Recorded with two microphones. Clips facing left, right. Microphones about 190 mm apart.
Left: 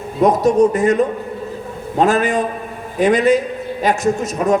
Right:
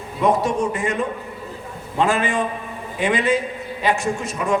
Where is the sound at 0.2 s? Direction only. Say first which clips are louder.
Left 7 dB; 40° left (ahead or behind).